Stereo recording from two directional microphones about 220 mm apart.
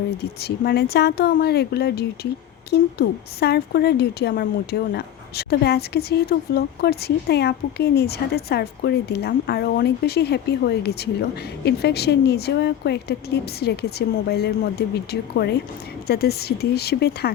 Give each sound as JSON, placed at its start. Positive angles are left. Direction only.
{"t": 0.2, "sound": "a woman's voice", "side_deg": 45}